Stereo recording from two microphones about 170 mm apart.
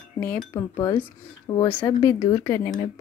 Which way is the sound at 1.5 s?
25° left (ahead or behind).